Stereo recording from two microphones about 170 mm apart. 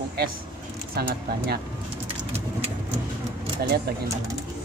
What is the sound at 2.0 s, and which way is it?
Bird, 35° right (ahead or behind).